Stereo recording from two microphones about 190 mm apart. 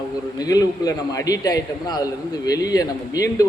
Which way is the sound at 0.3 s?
20° left (ahead or behind).